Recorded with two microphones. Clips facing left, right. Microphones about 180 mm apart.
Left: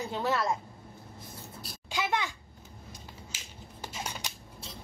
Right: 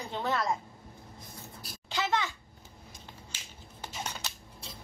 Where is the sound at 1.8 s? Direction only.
15° left (ahead or behind).